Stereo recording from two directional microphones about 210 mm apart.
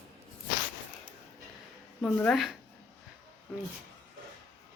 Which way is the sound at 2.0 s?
5° left (ahead or behind).